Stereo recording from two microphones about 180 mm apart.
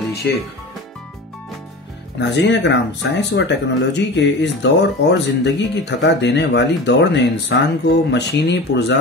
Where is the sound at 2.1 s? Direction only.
80° left.